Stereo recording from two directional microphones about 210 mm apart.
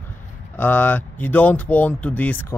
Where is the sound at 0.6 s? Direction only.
10° left (ahead or behind).